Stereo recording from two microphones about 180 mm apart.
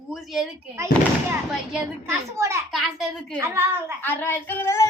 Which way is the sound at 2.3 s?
15° right (ahead or behind).